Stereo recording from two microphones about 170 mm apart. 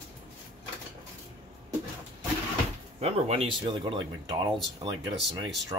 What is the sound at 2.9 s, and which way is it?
Speech, 40° right (ahead or behind).